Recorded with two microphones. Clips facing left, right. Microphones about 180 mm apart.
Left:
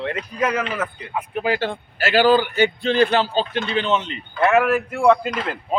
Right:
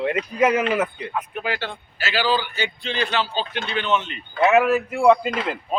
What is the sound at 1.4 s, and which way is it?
A man's voice, 45° left (ahead or behind).